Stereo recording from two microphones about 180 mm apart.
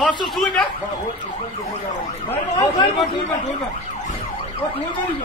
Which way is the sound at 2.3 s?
20° left (ahead or behind).